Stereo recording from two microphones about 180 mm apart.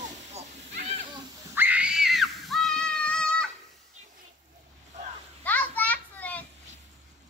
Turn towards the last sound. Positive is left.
turn(degrees=10)  # may be behind; listen again after turning